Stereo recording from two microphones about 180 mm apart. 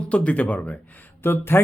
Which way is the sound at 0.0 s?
5° left (ahead or behind).